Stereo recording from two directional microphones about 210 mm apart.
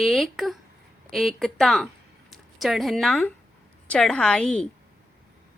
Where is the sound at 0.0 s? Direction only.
Centre (ahead or behind).